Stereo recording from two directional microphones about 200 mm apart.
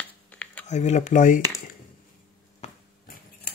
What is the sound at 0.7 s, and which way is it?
Speech, 35° left (ahead or behind).